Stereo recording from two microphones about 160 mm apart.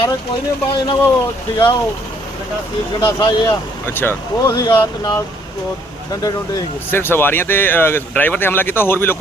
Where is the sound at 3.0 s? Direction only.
30° left (ahead or behind).